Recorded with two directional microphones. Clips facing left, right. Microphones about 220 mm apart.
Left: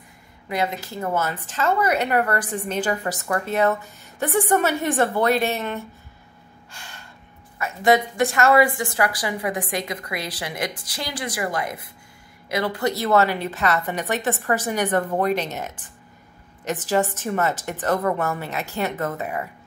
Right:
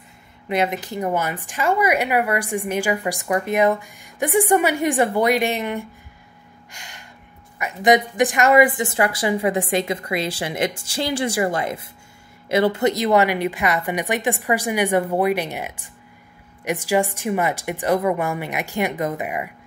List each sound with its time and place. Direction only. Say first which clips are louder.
0.5 s speech: right 4 dB; 20° right (ahead or behind)
6.7 s gasp: even; 15° right (ahead or behind)
7.5 s a woman's voice: right 2 dB; 15° right (ahead or behind)